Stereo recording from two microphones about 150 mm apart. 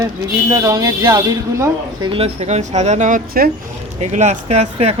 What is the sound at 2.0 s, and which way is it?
Speech, 40° right (ahead or behind).